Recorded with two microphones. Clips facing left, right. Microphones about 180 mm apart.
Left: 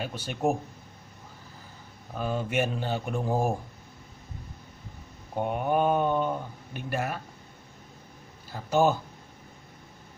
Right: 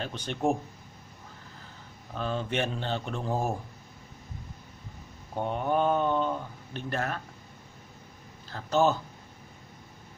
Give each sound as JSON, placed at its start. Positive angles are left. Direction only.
{"t": 0.0, "sound": "speech", "side_deg": 10}
{"t": 2.1, "sound": "speech", "side_deg": 10}
{"t": 5.3, "sound": "speech", "side_deg": 15}
{"t": 8.5, "sound": "speech", "side_deg": 10}